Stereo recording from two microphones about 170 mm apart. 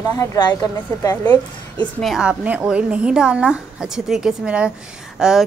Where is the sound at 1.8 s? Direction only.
Centre (ahead or behind).